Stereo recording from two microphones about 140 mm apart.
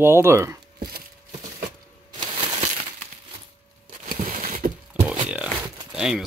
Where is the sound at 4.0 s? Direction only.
80° right.